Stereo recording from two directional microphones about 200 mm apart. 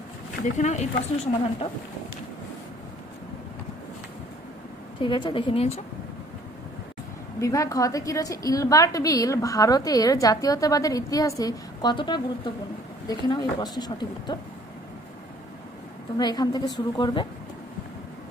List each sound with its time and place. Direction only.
0.4 s a woman's voice: 35° left (ahead or behind)
5.0 s a woman's voice: 25° left (ahead or behind)
7.3 s a woman's voice: 15° left (ahead or behind)
16.2 s a woman's voice: 20° left (ahead or behind)